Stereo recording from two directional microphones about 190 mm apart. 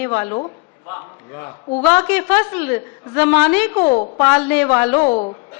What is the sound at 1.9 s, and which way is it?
A woman's voice, 15° left (ahead or behind).